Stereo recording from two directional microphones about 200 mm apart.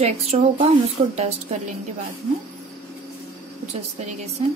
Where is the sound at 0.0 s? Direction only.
30° right (ahead or behind).